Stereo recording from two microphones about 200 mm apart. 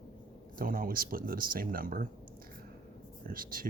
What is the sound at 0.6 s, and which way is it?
Speech, 45° right (ahead or behind).